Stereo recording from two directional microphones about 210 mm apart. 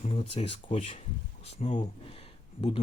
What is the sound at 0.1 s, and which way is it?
Speech, 30° left (ahead or behind).